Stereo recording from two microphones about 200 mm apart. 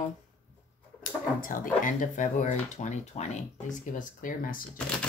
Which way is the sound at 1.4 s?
45° left (ahead or behind).